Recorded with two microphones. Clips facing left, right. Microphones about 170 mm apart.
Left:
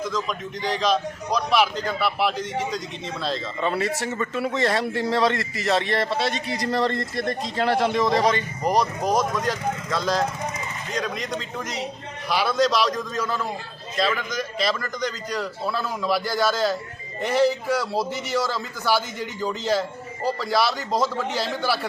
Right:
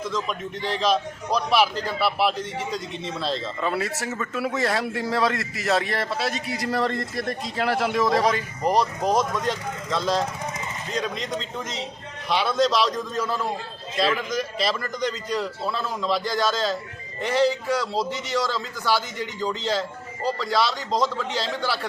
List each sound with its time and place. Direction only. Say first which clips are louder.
0.1 s a man's voice: even; 5° right (ahead or behind)